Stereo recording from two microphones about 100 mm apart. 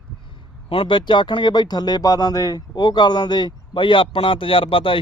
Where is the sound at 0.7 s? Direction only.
60° left (ahead or behind).